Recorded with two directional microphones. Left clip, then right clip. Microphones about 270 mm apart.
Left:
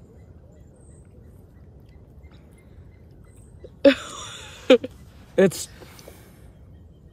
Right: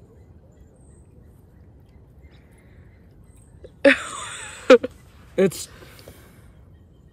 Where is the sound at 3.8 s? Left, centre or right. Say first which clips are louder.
Right 1 dB; centre.